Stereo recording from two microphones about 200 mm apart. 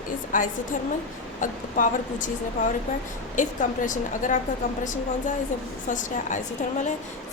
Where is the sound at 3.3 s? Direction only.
40° left (ahead or behind).